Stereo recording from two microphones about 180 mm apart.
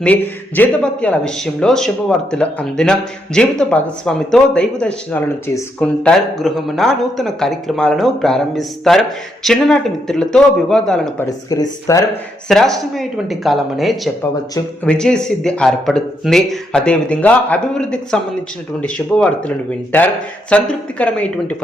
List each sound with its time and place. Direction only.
0.0 s speech: 10° left (ahead or behind)
11.5 s speech: 20° left (ahead or behind)
12.5 s speech: centre (ahead or behind)